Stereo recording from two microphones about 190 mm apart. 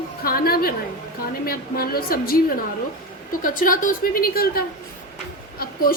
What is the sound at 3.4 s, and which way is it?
A woman's voice, 45° left (ahead or behind).